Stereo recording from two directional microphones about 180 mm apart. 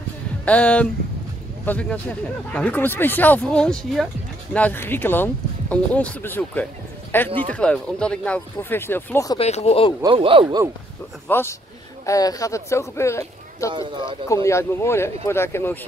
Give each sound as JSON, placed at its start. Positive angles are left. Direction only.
{"t": 0.5, "sound": "speech", "side_deg": 5}
{"t": 9.4, "sound": "speech", "side_deg": 35}
{"t": 10.0, "sound": "speech", "side_deg": -30}
{"t": 11.2, "sound": "speech", "side_deg": 10}
{"t": 13.7, "sound": "speech", "side_deg": -25}
{"t": 14.2, "sound": "speech", "side_deg": 15}